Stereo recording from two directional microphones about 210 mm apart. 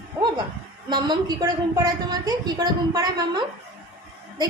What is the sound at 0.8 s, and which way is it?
A woman's voice, 20° right (ahead or behind).